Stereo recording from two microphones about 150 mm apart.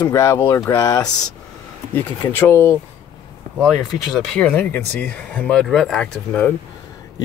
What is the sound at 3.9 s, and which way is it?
Speech, 5° left (ahead or behind).